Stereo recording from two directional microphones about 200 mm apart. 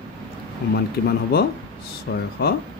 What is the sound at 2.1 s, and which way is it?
Speech, 55° left (ahead or behind).